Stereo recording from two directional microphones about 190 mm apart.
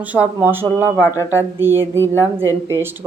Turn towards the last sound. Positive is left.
turn(degrees=-10)  # may be behind; listen again after turning